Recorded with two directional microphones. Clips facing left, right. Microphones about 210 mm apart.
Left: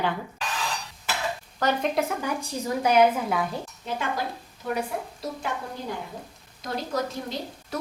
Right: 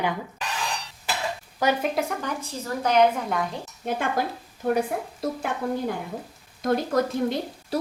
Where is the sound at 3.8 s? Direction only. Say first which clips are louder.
Right 5 dB; 55° right (ahead or behind).